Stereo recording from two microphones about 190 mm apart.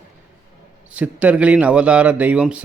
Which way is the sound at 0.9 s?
5° right (ahead or behind).